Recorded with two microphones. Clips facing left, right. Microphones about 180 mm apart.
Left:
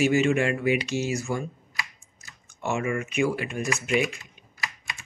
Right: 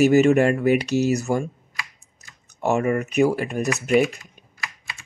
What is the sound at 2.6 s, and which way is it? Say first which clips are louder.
Speech: right 6 dB; 40° right (ahead or behind).